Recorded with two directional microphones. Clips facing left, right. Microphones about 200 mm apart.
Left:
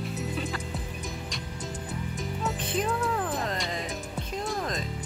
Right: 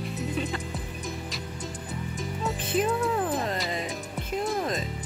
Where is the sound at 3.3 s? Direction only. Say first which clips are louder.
Right 2 dB; 5° right (ahead or behind).